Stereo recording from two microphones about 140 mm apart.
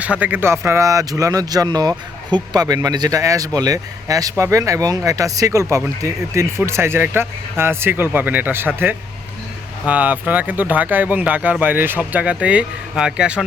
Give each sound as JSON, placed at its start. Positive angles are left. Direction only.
{"t": 0.0, "sound": "speech", "side_deg": -10}